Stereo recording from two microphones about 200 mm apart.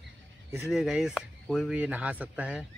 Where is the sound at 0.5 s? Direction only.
Centre (ahead or behind).